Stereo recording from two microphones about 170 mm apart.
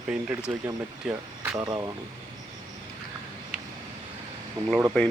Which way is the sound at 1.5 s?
25° right (ahead or behind).